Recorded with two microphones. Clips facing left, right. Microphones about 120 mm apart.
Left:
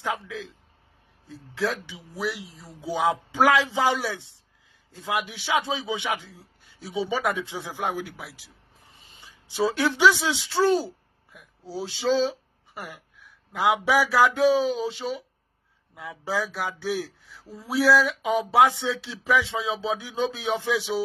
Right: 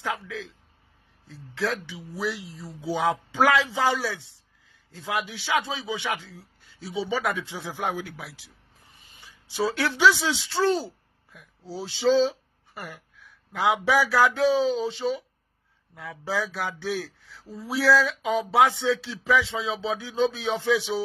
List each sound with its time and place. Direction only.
0.0 s a man's voice: 20° left (ahead or behind)
1.6 s speech: 15° left (ahead or behind)
2.1 s speech: centre (ahead or behind)
2.6 s speech: 15° left (ahead or behind)
7.8 s speech: centre (ahead or behind)
8.9 s speech: 25° left (ahead or behind)
12.1 s speech: centre (ahead or behind)
12.7 s speech: 10° left (ahead or behind)